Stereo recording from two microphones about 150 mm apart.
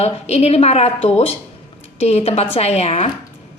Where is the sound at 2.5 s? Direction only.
45° left (ahead or behind).